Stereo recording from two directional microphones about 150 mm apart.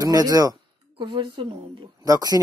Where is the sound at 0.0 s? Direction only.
25° right (ahead or behind).